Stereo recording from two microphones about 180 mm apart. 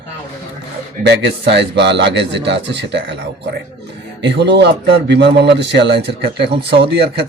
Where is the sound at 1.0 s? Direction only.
70° right (ahead or behind).